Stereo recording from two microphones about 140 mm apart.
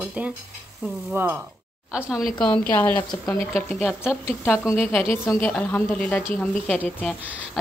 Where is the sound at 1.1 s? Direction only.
15° right (ahead or behind).